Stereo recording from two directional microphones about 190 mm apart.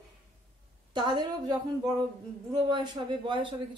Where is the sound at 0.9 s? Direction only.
25° right (ahead or behind).